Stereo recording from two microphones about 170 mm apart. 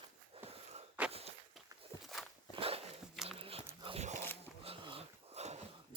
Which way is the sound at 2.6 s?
35° right (ahead or behind).